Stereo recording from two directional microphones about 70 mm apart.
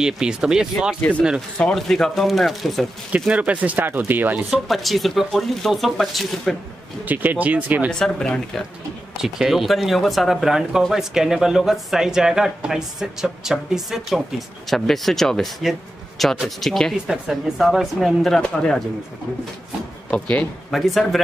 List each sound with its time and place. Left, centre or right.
0.0 s speech: centre
1.1 s speech: left
1.8 s speech: centre
3.3 s speech: centre
4.5 s speech: centre
7.1 s speech: right
7.9 s speech: centre
9.2 s speech: centre
16.9 s speech: centre
18.4 s speech: centre
20.1 s speech: centre
20.7 s speech: centre